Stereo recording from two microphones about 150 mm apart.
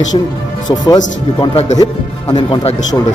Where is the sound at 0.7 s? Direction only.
25° left (ahead or behind).